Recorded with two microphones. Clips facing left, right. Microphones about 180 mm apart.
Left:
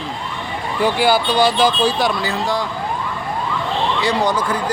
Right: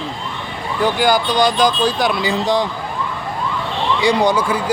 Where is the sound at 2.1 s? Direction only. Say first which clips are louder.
Right 3 dB; 15° right (ahead or behind).